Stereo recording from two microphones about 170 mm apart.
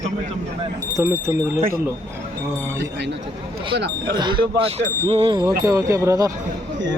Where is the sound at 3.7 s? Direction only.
80° right.